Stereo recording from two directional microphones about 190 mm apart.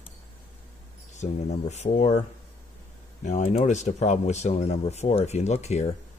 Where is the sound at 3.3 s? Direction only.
40° left (ahead or behind).